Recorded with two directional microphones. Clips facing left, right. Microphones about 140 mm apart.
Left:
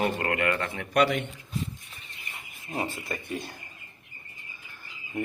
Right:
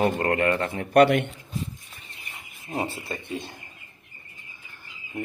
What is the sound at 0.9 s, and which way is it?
Speech, 60° right (ahead or behind).